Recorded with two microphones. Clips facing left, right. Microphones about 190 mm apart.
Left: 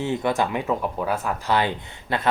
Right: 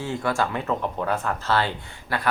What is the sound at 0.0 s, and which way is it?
Speech, 20° left (ahead or behind).